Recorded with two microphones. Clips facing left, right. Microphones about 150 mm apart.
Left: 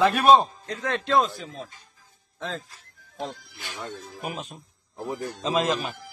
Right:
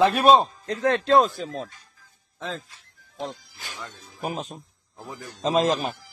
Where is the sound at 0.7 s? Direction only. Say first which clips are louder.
Right 6 dB; 35° right (ahead or behind).